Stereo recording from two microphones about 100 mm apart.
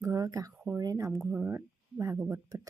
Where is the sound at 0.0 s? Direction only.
35° right (ahead or behind).